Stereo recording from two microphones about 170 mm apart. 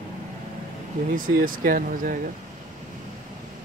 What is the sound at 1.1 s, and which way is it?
Speech, 55° right (ahead or behind).